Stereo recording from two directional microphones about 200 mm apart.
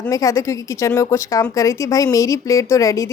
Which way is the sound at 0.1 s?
15° left (ahead or behind).